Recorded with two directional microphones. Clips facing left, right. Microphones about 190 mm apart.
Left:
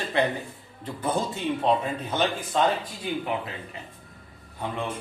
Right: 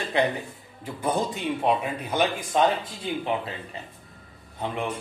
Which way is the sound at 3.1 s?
25° right (ahead or behind).